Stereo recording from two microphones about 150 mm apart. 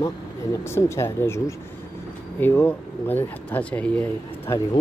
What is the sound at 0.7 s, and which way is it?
Speech, 15° left (ahead or behind).